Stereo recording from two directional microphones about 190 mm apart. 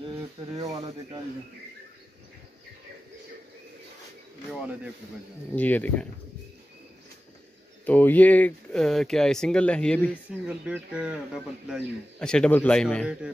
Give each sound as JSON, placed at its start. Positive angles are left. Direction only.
{"t": 0.6, "sound": "speech", "side_deg": -20}
{"t": 5.6, "sound": "speech", "side_deg": 10}
{"t": 7.8, "sound": "speech", "side_deg": 10}
{"t": 10.4, "sound": "a man's voice", "side_deg": -5}